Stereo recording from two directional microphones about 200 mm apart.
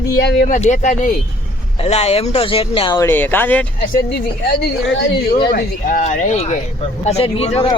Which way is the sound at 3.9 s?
55° left (ahead or behind).